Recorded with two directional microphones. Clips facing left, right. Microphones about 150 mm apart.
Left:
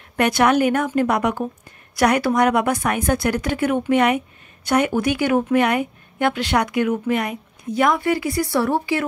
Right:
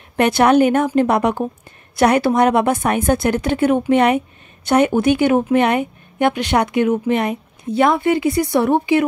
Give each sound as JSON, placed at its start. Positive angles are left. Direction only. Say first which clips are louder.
{"t": 0.1, "sound": "speech", "louder": "right 4 dB", "side_deg": -25}